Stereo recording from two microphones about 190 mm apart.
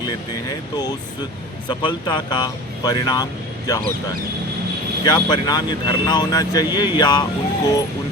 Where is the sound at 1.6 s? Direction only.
25° left (ahead or behind).